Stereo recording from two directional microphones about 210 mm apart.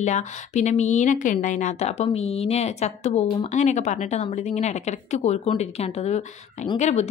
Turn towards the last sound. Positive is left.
turn(degrees=30)  # may be behind; listen again after turning